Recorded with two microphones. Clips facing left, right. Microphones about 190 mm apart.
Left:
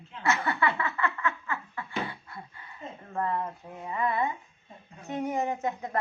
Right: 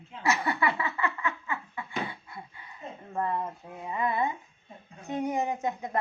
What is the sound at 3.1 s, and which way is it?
A woman's voice, 10° right (ahead or behind).